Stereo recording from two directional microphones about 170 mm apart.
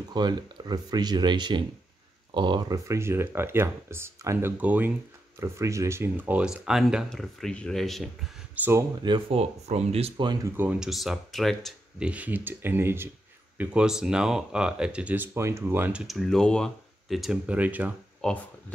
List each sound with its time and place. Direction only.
0.1 s speech: 25° right (ahead or behind); by 8.7 s 10° right (ahead or behind)
9.0 s speech: 30° right (ahead or behind)
10.5 s speech: 10° right (ahead or behind)
18.2 s speech: 5° left (ahead or behind)